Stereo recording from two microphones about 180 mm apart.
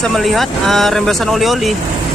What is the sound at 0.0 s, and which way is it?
Speech, centre (ahead or behind).